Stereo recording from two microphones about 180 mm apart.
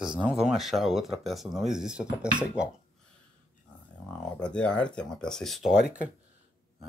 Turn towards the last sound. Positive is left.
turn(degrees=-5)  # may be behind; listen again after turning